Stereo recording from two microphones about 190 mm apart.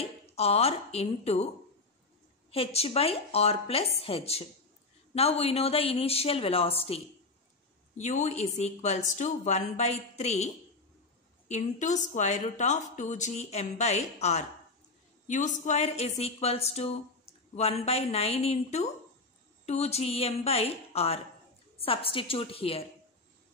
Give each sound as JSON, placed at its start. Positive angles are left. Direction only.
{"t": 0.0, "sound": "speech", "side_deg": 30}
{"t": 2.5, "sound": "speech", "side_deg": 30}
{"t": 8.0, "sound": "a woman's voice", "side_deg": 35}